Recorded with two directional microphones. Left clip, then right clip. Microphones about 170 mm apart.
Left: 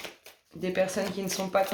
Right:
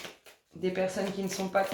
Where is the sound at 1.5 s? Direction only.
45° left (ahead or behind).